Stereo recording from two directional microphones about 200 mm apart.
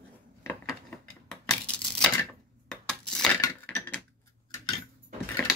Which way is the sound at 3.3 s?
10° left (ahead or behind).